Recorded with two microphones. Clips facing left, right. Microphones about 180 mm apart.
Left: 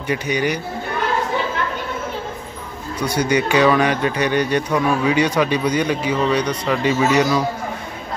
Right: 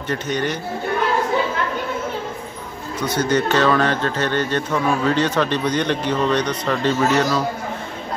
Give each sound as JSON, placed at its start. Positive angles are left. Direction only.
{"t": 0.1, "sound": "speech", "side_deg": 10}
{"t": 3.0, "sound": "speech", "side_deg": 10}